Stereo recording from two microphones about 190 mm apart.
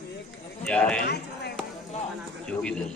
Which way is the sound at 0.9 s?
60° left (ahead or behind).